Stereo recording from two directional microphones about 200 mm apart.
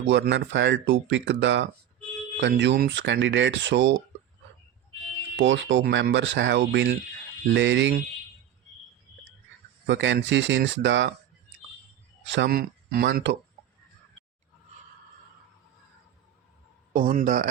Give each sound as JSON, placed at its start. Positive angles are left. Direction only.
{"t": 0.0, "sound": "speech", "side_deg": -60}
{"t": 5.4, "sound": "speech", "side_deg": -65}
{"t": 9.8, "sound": "speech", "side_deg": -65}
{"t": 12.2, "sound": "speech", "side_deg": -65}
{"t": 16.9, "sound": "speech", "side_deg": -45}